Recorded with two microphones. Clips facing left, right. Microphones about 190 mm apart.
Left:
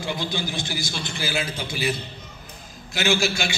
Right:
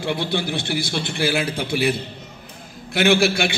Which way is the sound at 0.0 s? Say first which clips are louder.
Right 5 dB; 60° right (ahead or behind).